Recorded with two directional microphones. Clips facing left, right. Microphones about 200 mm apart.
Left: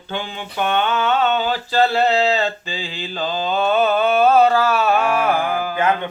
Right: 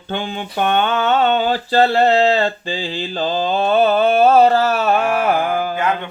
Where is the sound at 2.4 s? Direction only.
35° right (ahead or behind).